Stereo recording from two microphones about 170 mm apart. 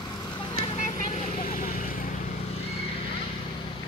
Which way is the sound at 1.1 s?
35° left (ahead or behind).